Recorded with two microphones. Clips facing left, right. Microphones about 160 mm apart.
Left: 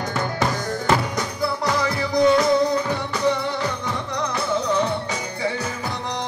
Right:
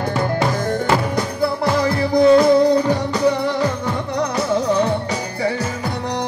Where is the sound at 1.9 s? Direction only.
30° right (ahead or behind).